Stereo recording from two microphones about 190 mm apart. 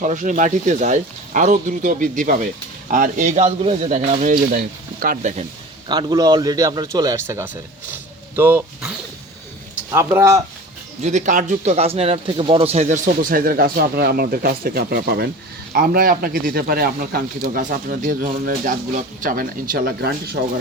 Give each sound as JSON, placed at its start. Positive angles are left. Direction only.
{"t": 0.0, "sound": "speech", "side_deg": -40}
{"t": 5.9, "sound": "speech", "side_deg": -20}
{"t": 11.0, "sound": "speech", "side_deg": -40}